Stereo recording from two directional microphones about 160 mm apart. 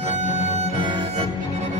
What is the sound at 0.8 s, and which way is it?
Music, 30° right (ahead or behind).